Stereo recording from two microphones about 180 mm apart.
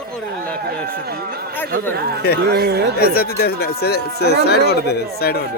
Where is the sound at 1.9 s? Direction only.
60° right (ahead or behind).